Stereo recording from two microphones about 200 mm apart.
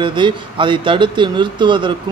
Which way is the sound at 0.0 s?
25° right (ahead or behind).